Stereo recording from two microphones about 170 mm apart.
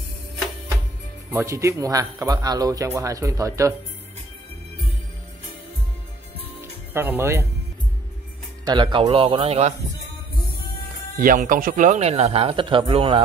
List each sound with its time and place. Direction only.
1.3 s speech: 15° right (ahead or behind)
6.6 s music: 15° right (ahead or behind)
8.6 s a man's voice: 25° right (ahead or behind)
11.1 s a man's voice: 55° right (ahead or behind); by 13.2 s 30° right (ahead or behind)